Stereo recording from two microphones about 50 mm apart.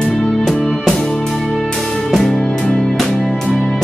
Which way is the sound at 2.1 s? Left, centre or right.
Centre.